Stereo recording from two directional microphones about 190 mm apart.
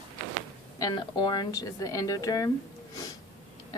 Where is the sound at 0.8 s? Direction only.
25° left (ahead or behind).